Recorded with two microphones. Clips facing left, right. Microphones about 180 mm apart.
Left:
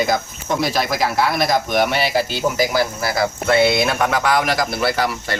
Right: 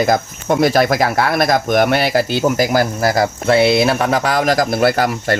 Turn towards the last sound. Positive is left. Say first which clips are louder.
# right 5 dB
turn(degrees=-45)  # may be behind; listen again after turning